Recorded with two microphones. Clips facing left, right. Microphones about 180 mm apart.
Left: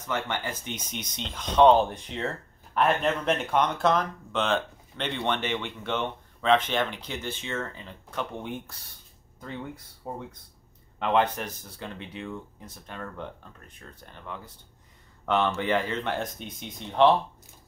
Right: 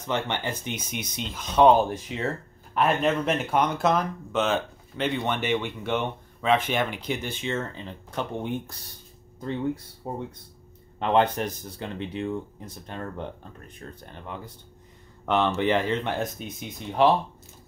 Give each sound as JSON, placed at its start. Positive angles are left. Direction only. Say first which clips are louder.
{"t": 0.0, "sound": "speech", "louder": "right 3 dB", "side_deg": -20}
{"t": 10.0, "sound": "speech", "louder": "right 4 dB", "side_deg": -25}
{"t": 15.2, "sound": "speech", "louder": "right 2 dB", "side_deg": -20}
{"t": 16.2, "sound": "speech", "louder": "right 3 dB", "side_deg": -5}